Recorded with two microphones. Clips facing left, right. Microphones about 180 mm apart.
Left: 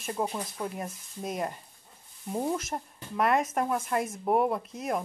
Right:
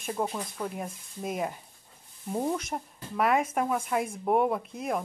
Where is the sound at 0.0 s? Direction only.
Centre (ahead or behind).